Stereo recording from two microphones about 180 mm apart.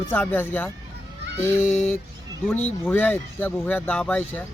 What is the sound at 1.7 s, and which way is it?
Speech, 40° left (ahead or behind).